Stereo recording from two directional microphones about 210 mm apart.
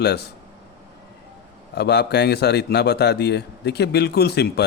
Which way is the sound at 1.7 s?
50° left (ahead or behind).